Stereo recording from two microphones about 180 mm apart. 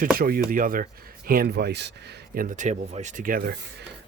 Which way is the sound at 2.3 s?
45° right (ahead or behind).